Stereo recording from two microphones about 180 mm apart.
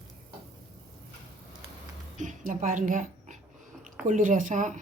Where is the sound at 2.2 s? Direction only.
45° right (ahead or behind).